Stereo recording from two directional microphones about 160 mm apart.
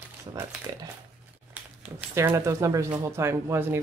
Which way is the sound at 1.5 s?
5° right (ahead or behind).